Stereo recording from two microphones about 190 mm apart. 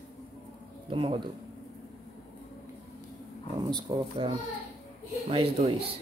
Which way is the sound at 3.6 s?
20° right (ahead or behind).